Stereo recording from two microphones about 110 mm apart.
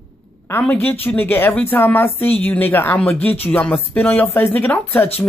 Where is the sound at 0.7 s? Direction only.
15° left (ahead or behind).